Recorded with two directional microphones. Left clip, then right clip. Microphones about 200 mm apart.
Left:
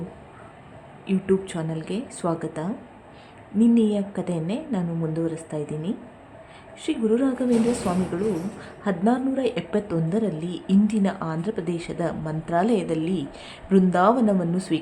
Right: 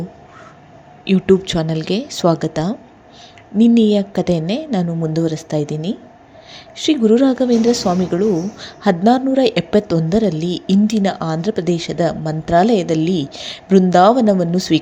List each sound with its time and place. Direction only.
1.0 s a woman's voice: 30° right (ahead or behind)